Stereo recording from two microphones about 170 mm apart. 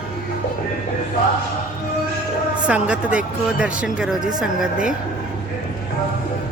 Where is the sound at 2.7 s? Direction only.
5° right (ahead or behind).